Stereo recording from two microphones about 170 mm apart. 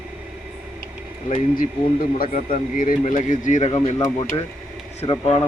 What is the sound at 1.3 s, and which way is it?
Speech, 50° left (ahead or behind).